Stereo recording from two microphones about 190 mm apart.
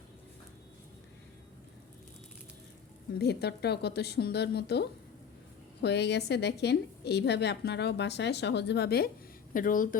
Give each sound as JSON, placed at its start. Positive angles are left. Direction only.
{"t": 3.2, "sound": "a woman's voice", "side_deg": 60}
{"t": 9.5, "sound": "speech", "side_deg": 45}